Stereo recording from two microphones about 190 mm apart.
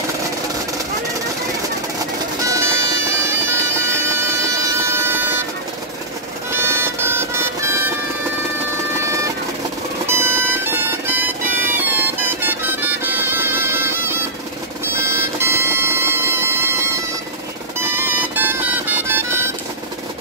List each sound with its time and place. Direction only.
2.4 s music: 15° right (ahead or behind)
6.5 s vehicle: 10° right (ahead or behind)
10.0 s music: 10° right (ahead or behind)